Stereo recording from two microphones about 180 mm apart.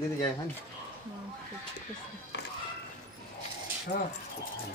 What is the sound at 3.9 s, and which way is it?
Speech, 65° left (ahead or behind).